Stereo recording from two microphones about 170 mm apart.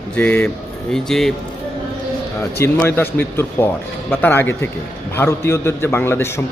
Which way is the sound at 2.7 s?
10° left (ahead or behind).